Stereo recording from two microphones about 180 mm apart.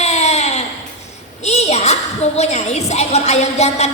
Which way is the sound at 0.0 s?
35° left (ahead or behind).